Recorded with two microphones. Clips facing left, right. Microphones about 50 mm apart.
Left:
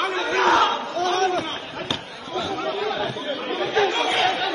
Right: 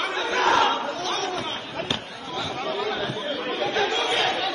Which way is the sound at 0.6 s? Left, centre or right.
Right.